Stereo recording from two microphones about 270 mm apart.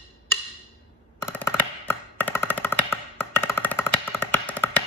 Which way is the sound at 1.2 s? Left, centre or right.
Centre.